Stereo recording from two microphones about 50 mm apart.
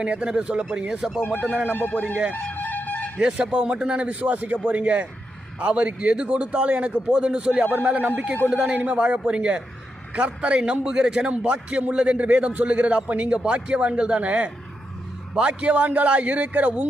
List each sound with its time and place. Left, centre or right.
0.0 s speech: right
1.9 s speech: left
2.5 s music: left
3.2 s a man's voice: centre
7.7 s speech: right
8.4 s a man's voice: centre